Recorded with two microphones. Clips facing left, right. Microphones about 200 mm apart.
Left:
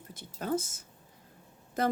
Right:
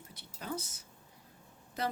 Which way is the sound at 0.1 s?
50° left (ahead or behind).